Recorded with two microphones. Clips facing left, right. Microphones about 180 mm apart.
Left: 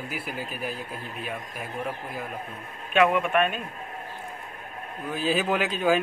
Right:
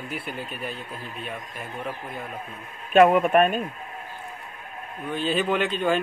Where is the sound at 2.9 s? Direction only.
40° right (ahead or behind).